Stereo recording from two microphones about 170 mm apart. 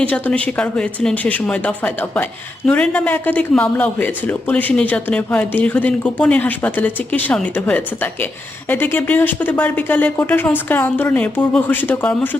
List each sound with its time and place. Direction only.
0.0 s a man's voice: 10° left (ahead or behind)